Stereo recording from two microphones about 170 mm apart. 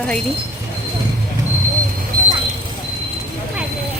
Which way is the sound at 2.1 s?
55° right (ahead or behind).